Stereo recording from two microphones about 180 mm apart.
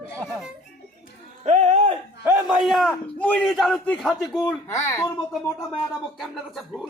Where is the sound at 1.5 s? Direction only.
40° right (ahead or behind).